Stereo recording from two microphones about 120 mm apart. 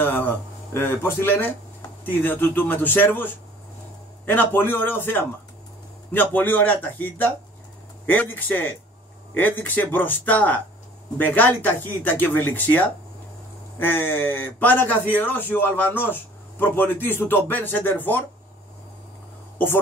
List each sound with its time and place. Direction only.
0.0 s speech: 15° left (ahead or behind)
4.3 s speech: 15° left (ahead or behind)